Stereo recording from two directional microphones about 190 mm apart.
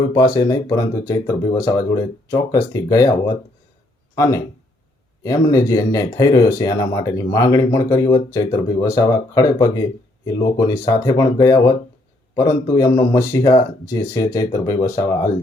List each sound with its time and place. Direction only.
0.3 s speech: 20° left (ahead or behind)